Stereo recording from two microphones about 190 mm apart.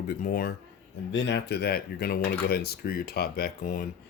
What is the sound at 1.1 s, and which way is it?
Speech, 75° left (ahead or behind).